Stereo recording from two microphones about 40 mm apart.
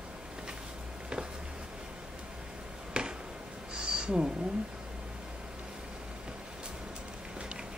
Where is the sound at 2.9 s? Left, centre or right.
Right.